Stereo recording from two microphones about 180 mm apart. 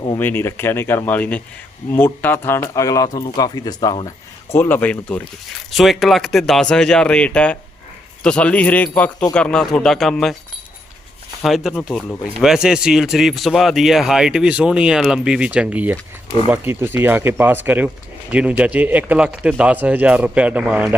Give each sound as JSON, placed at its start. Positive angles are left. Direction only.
{"t": 0.2, "sound": "speech", "side_deg": 10}
{"t": 11.4, "sound": "speech", "side_deg": 0}